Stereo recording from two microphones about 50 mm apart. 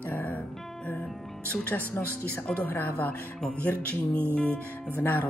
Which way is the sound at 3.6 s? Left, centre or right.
Left.